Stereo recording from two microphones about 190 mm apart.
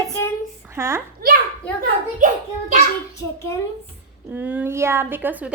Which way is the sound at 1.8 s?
40° right (ahead or behind).